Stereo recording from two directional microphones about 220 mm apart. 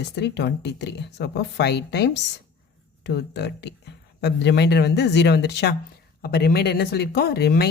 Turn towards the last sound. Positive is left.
turn(degrees=45)  # may be behind; listen again after turning